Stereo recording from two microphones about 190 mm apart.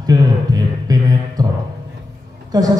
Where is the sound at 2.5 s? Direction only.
20° right (ahead or behind).